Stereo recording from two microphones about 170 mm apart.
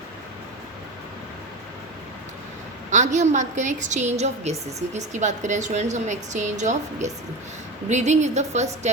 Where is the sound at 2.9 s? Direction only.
45° right (ahead or behind).